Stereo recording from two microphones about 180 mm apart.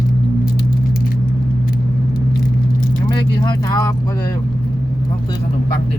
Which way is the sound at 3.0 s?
25° left (ahead or behind).